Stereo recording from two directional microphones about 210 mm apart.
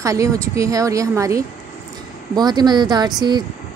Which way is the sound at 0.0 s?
15° right (ahead or behind).